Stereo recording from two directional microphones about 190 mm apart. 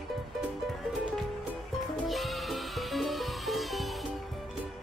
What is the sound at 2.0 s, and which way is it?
Music, centre (ahead or behind).